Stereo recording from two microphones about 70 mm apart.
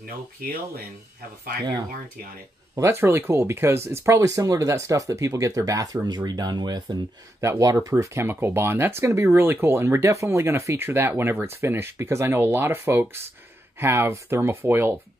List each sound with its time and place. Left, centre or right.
2.8 s speech: right
4.2 s speech: right
7.3 s speech: right